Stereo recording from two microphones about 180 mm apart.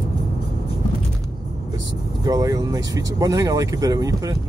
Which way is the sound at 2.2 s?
20° right (ahead or behind).